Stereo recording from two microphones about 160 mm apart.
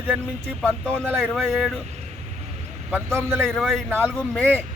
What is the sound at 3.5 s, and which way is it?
Speech, centre (ahead or behind).